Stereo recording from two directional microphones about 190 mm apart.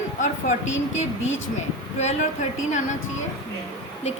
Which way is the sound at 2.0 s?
40° left (ahead or behind).